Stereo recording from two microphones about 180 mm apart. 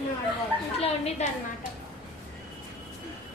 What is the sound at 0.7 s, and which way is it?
Speech, 35° left (ahead or behind).